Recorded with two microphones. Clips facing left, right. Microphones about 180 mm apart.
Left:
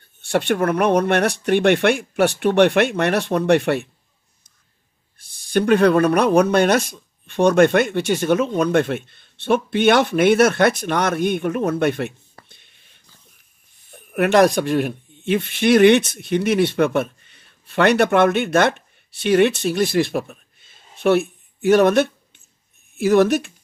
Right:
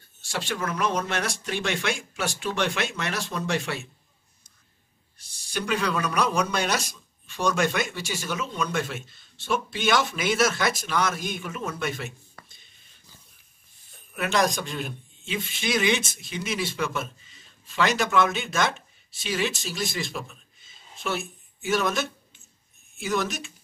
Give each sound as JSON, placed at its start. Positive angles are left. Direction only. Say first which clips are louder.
{"t": 0.2, "sound": "speech", "louder": "left 12 dB", "side_deg": 60}
{"t": 5.2, "sound": "speech", "louder": "left 13 dB", "side_deg": 55}
{"t": 12.4, "sound": "a sound", "louder": "left 5 dB", "side_deg": 65}
{"t": 13.9, "sound": "speech", "louder": "left 10 dB", "side_deg": 60}